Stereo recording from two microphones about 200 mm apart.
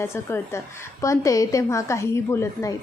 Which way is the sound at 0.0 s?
10° left (ahead or behind).